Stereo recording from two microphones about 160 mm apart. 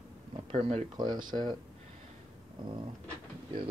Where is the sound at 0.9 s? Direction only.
25° right (ahead or behind).